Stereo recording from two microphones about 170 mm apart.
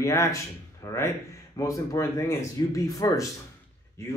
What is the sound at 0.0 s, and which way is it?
Speech, 15° left (ahead or behind).